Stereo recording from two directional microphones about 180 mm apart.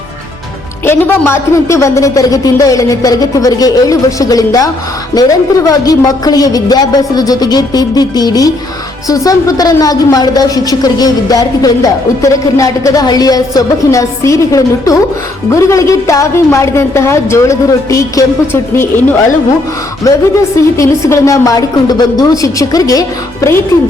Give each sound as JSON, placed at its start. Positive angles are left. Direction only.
{"t": 0.9, "sound": "a woman's voice", "side_deg": 10}
{"t": 20.1, "sound": "a woman's voice", "side_deg": 20}